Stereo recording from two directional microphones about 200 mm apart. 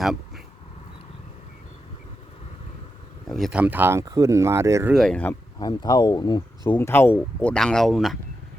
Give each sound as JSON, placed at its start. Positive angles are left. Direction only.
{"t": 0.0, "sound": "a sound", "side_deg": 0}
{"t": 3.2, "sound": "speech", "side_deg": 0}
{"t": 4.9, "sound": "speech", "side_deg": 5}
{"t": 5.5, "sound": "speech", "side_deg": 20}